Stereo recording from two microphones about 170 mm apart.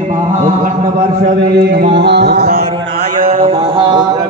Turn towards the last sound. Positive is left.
turn(degrees=-25)  # may be behind; listen again after turning